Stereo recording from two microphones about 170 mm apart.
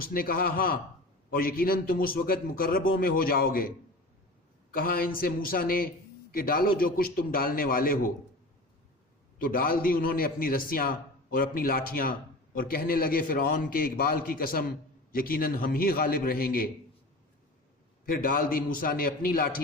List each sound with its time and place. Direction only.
0.0 s a man's voice: 60° left (ahead or behind)
4.7 s a man's voice: 60° left (ahead or behind)
9.4 s a man's voice: 60° left (ahead or behind)
18.0 s a man's voice: 55° left (ahead or behind)